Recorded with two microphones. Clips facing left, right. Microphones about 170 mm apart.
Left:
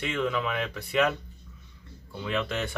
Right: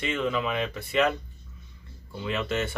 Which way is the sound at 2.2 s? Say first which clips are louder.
Right 1 dB; 5° right (ahead or behind).